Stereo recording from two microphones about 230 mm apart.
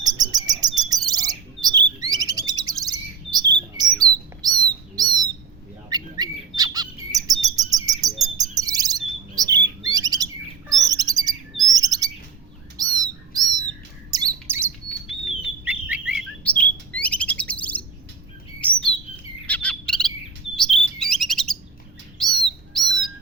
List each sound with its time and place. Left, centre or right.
0.0 s chirp: centre
2.0 s bird: centre
7.4 s chirp: centre
9.3 s bird: centre
14.1 s squawk: centre
15.2 s bird: centre
16.4 s chirp: centre
19.1 s bird: centre
20.6 s chirp: centre
22.2 s bird: centre